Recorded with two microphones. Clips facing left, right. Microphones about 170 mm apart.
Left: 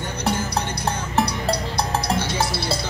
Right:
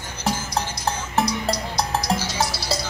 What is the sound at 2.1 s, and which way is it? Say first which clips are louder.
Music: left 2 dB; 60° left (ahead or behind).